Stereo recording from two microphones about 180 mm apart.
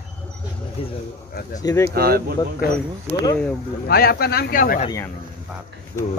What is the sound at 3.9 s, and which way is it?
Speech, 60° left (ahead or behind).